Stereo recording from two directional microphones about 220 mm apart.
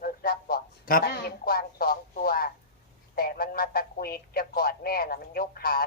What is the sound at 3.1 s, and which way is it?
Speech, 40° left (ahead or behind).